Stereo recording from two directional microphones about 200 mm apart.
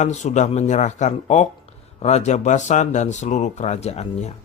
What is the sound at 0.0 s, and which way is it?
Speech, 35° left (ahead or behind).